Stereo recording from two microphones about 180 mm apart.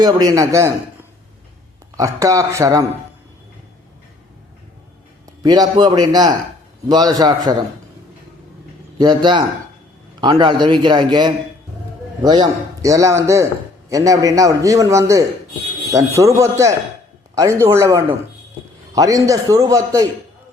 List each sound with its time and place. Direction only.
0.0 s a man's voice: 20° right (ahead or behind)
2.0 s a man's voice: 20° right (ahead or behind)
5.4 s a man's voice: 20° right (ahead or behind)
9.0 s a man's voice: 25° right (ahead or behind)